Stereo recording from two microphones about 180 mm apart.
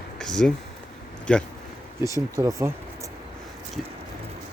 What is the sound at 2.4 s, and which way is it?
Speech, 15° right (ahead or behind).